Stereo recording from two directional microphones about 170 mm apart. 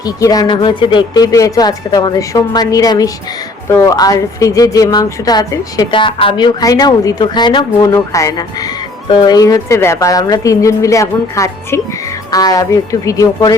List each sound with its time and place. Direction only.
0.0 s speech: 20° left (ahead or behind)